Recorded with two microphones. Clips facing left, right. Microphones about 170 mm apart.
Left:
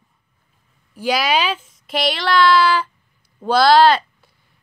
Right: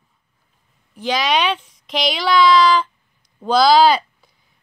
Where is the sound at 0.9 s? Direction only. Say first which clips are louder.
Left 1 dB; 10° left (ahead or behind).